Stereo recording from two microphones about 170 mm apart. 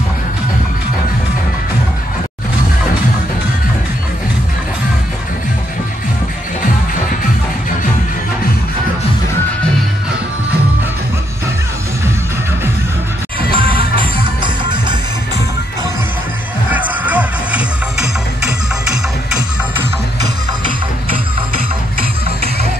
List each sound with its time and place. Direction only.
13.6 s music: 30° right (ahead or behind)
16.7 s music: 10° right (ahead or behind)